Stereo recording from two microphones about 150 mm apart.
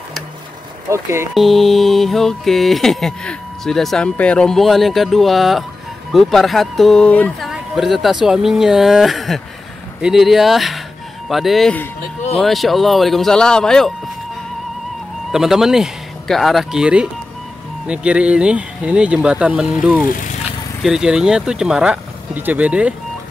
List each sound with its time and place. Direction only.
0.8 s speech: 20° right (ahead or behind)
1.3 s mantra: centre (ahead or behind)
15.3 s mantra: 5° right (ahead or behind)
17.8 s speech: 5° right (ahead or behind)
20.1 s speech: 60° left (ahead or behind)
20.8 s mantra: 5° right (ahead or behind)